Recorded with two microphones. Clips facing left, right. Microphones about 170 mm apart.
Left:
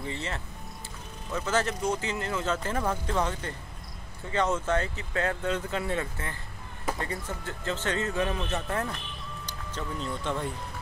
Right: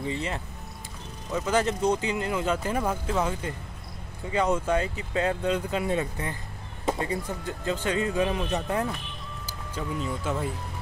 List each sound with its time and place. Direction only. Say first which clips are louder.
0.0 s speech: right 4 dB; 15° right (ahead or behind)